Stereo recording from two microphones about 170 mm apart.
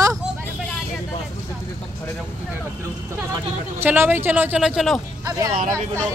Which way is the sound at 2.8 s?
15° right (ahead or behind).